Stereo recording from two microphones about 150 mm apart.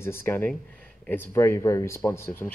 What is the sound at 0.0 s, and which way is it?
Speech, 15° left (ahead or behind).